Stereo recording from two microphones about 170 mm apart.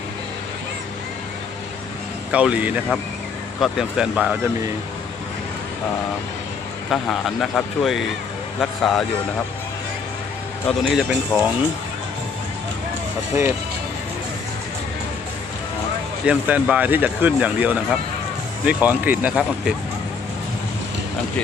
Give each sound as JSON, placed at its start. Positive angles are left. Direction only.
{"t": 2.3, "sound": "speech", "side_deg": -5}
{"t": 6.9, "sound": "speech", "side_deg": 0}
{"t": 10.7, "sound": "speech", "side_deg": -5}
{"t": 13.3, "sound": "speech", "side_deg": -15}
{"t": 16.2, "sound": "speech", "side_deg": -5}